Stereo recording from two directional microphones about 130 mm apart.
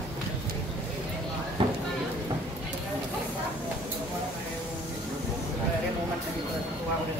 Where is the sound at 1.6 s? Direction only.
40° right (ahead or behind).